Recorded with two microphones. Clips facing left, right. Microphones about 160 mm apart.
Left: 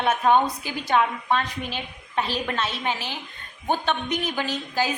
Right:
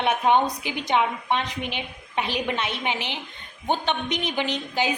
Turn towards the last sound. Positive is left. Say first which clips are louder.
# even
turn(degrees=-20)  # may be behind; listen again after turning